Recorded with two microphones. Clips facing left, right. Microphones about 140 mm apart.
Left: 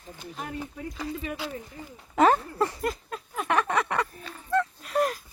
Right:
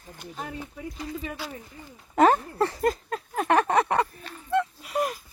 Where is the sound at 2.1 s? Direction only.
45° right (ahead or behind).